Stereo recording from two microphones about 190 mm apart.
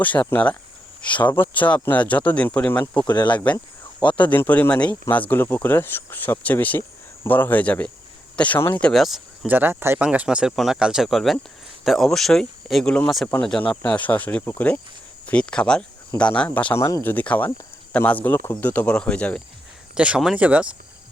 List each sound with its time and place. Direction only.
0.0 s speech: 10° left (ahead or behind)
3.1 s speech: 20° left (ahead or behind)
4.2 s speech: 10° left (ahead or behind); by 20.7 s 5° right (ahead or behind)